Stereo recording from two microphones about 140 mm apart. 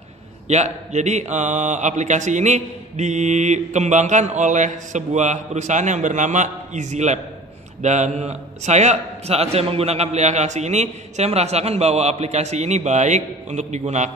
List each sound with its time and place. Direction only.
0.5 s a man's voice: 55° right (ahead or behind)